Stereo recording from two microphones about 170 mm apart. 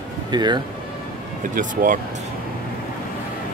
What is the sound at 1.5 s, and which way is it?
Speech, 50° right (ahead or behind).